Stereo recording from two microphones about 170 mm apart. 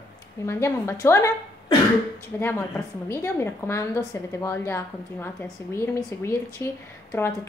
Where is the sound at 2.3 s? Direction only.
10° left (ahead or behind).